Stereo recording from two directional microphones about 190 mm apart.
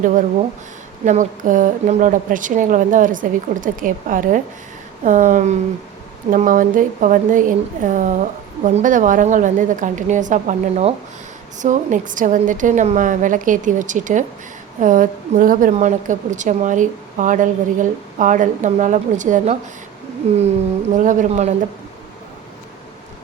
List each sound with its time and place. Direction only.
0.0 s a woman's voice: 45° right (ahead or behind)
20.9 s a woman's voice: 40° right (ahead or behind)